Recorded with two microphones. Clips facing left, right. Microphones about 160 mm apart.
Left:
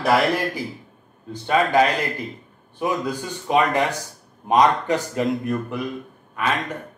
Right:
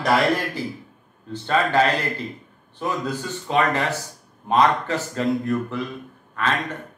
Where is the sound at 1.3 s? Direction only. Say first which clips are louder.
Left 2 dB; 15° left (ahead or behind).